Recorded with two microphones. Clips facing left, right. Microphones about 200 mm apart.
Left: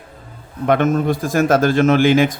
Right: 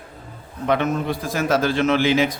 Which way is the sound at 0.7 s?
50° left (ahead or behind).